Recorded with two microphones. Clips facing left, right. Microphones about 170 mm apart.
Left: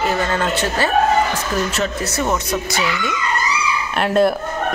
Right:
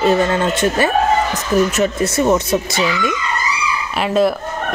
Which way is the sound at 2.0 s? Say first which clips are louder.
Right 6 dB; 25° right (ahead or behind).